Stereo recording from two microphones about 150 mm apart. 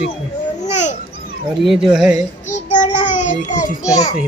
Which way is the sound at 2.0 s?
5° right (ahead or behind).